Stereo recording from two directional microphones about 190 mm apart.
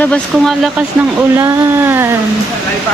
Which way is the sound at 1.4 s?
10° right (ahead or behind).